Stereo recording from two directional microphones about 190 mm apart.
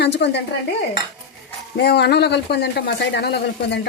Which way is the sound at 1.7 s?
60° left (ahead or behind).